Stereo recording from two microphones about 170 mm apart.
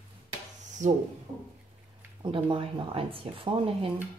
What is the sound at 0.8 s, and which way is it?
Speech, 45° right (ahead or behind).